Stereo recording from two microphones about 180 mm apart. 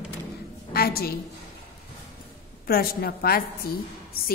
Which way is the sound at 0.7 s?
60° left (ahead or behind).